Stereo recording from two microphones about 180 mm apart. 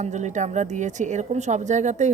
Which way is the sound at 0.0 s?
40° right (ahead or behind).